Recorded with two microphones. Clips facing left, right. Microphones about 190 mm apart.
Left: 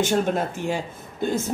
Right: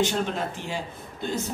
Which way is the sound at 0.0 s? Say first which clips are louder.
Left 4 dB; 45° left (ahead or behind).